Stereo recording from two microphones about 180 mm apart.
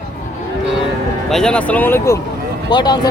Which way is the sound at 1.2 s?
5° left (ahead or behind).